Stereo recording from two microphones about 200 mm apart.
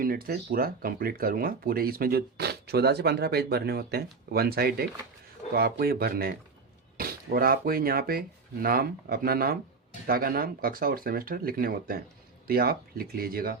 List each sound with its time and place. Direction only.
0.0 s speech: 45° right (ahead or behind)